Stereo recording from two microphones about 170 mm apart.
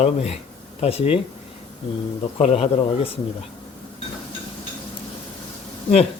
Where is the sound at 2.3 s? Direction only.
35° left (ahead or behind).